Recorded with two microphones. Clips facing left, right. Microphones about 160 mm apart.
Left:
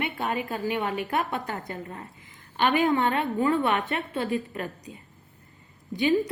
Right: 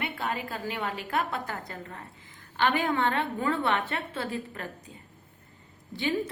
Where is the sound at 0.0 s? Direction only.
20° left (ahead or behind).